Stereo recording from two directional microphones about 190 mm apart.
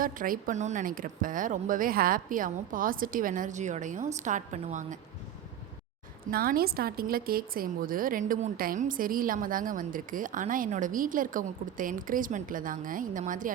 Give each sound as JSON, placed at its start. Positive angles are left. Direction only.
{"t": 0.0, "sound": "a woman's voice", "side_deg": -45}
{"t": 6.3, "sound": "a woman's voice", "side_deg": -50}